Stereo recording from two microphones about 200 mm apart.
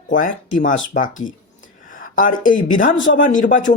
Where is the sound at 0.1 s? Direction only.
40° left (ahead or behind).